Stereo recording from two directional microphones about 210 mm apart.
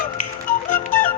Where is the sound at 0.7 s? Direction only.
40° left (ahead or behind).